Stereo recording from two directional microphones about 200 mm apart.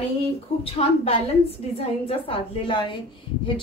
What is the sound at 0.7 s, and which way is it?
A woman's voice, 30° left (ahead or behind).